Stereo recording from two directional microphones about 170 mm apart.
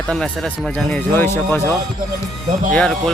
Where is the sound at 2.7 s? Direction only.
5° left (ahead or behind).